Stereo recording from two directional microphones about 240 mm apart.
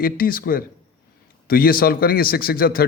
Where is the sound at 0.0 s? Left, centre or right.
Left.